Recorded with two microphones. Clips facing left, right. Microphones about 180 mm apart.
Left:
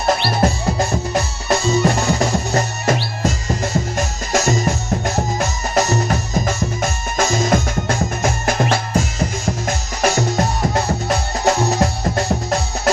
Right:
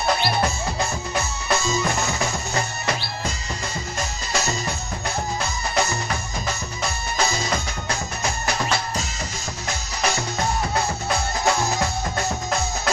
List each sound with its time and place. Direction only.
0.4 s music: 40° left (ahead or behind)